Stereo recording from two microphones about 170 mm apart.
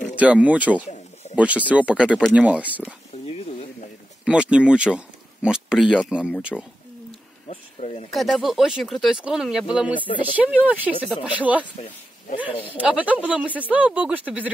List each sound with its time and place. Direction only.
0.1 s speech: 10° right (ahead or behind)
3.3 s sizzle: 35° left (ahead or behind)
4.2 s speech: 5° right (ahead or behind)
7.1 s a sound: 40° left (ahead or behind)
8.1 s speech: centre (ahead or behind)
9.9 s speech: 30° left (ahead or behind)
10.3 s speech: 10° right (ahead or behind)
12.6 s speech: 10° right (ahead or behind)